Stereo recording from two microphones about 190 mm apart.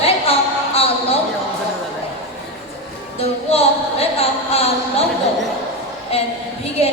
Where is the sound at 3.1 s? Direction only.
30° left (ahead or behind).